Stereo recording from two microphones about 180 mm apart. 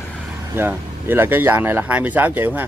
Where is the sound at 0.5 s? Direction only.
10° right (ahead or behind).